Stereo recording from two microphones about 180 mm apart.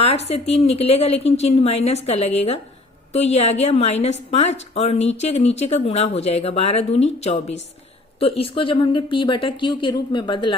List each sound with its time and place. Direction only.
0.0 s a woman's voice: 35° left (ahead or behind)